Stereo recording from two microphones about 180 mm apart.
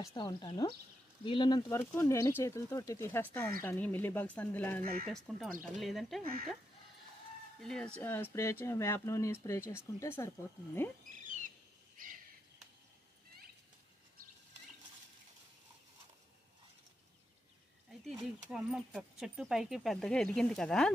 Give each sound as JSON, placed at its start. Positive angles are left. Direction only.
{"t": 0.0, "sound": "speech", "side_deg": 25}
{"t": 7.6, "sound": "speech", "side_deg": 5}
{"t": 12.0, "sound": "owl", "side_deg": -50}
{"t": 18.5, "sound": "speech", "side_deg": 0}